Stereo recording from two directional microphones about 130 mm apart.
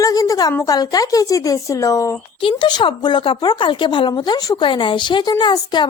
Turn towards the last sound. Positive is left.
turn(degrees=35)  # may be behind; listen again after turning